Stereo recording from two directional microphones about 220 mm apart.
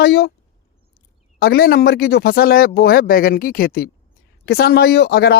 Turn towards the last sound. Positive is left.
turn(degrees=45)  # may be behind; listen again after turning